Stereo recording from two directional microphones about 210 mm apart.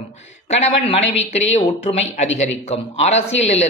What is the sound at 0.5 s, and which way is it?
Speech, 30° left (ahead or behind).